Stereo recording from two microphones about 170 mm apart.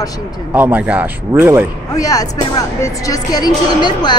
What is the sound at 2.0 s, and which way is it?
Speech, 20° left (ahead or behind).